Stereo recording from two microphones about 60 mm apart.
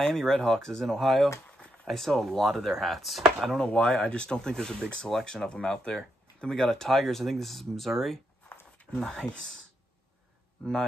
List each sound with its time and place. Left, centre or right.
0.0 s speech: centre
1.9 s chopping: centre
3.3 s speech: centre
10.6 s speech: centre